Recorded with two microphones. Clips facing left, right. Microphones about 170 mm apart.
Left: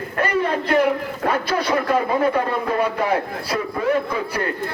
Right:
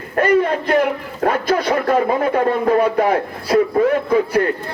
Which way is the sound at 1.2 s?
45° right (ahead or behind).